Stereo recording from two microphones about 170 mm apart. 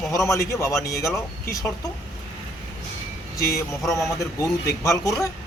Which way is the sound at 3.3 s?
20° left (ahead or behind).